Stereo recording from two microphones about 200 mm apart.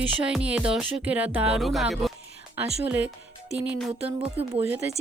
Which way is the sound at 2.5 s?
5° right (ahead or behind).